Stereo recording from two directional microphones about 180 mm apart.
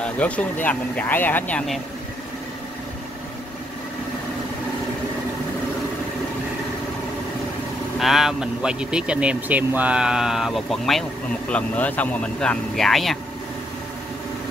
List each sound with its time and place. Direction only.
0.0 s speech: 5° left (ahead or behind)
8.0 s speech: centre (ahead or behind)